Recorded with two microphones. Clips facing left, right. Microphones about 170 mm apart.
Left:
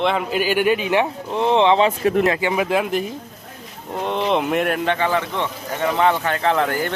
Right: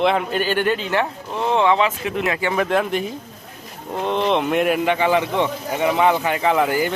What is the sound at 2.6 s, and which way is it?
Speech, 5° left (ahead or behind).